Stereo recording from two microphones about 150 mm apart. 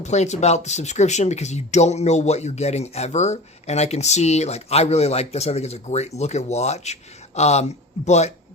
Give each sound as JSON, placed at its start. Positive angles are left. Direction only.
{"t": 0.0, "sound": "speech", "side_deg": 50}